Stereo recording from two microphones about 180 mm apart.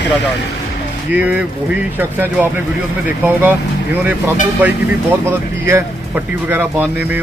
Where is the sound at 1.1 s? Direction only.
10° right (ahead or behind).